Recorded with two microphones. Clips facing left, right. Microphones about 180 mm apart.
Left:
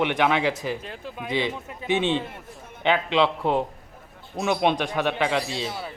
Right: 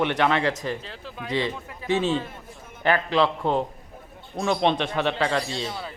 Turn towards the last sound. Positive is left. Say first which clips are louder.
# even
turn(degrees=5)  # may be behind; listen again after turning